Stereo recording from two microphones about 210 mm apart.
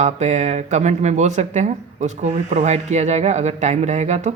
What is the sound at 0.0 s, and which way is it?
Speech, 35° right (ahead or behind).